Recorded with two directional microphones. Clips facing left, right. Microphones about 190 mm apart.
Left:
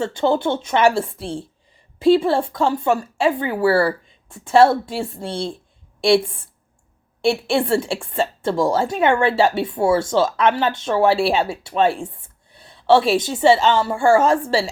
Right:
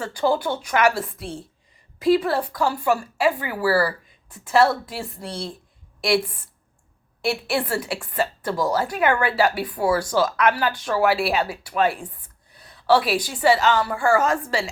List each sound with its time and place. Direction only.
0.0 s a woman's voice: 25° left (ahead or behind)